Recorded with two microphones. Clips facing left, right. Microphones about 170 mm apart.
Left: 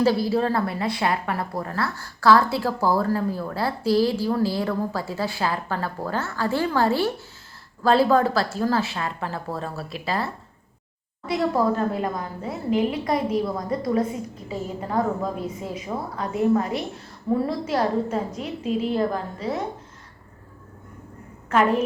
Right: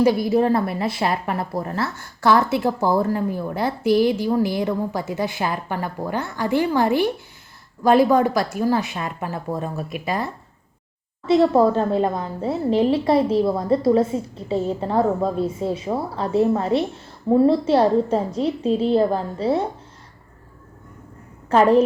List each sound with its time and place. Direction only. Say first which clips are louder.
0.0 s a woman's voice: right 3 dB; 20° right (ahead or behind)
21.5 s a woman's voice: right 6 dB; 30° right (ahead or behind)